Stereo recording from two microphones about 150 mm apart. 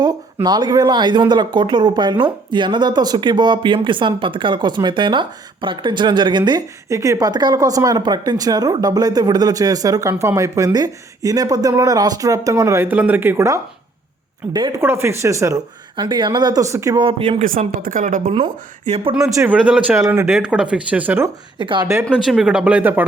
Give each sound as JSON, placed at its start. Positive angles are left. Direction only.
{"t": 0.4, "sound": "speech", "side_deg": -30}
{"t": 14.8, "sound": "speech", "side_deg": -15}
{"t": 17.1, "sound": "speech", "side_deg": -40}
{"t": 17.4, "sound": "speech", "side_deg": -65}
{"t": 18.4, "sound": "speech", "side_deg": -45}
{"t": 19.2, "sound": "speech", "side_deg": -20}
{"t": 19.5, "sound": "speech", "side_deg": -5}
{"t": 20.0, "sound": "speech", "side_deg": -15}
{"t": 20.2, "sound": "speech", "side_deg": -5}
{"t": 21.6, "sound": "speech", "side_deg": -30}
{"t": 22.1, "sound": "speech", "side_deg": 0}